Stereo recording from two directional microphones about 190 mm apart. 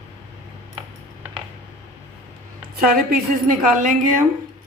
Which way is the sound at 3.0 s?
50° right (ahead or behind).